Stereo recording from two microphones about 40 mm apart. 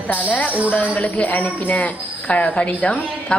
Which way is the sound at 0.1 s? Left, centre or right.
Left.